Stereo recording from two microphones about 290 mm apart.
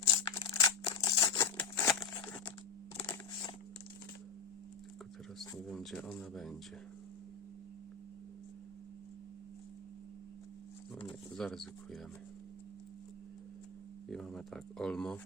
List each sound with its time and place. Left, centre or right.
0.1 s a sound: centre
5.4 s speech: centre
10.9 s pigeon: centre
14.1 s speech: centre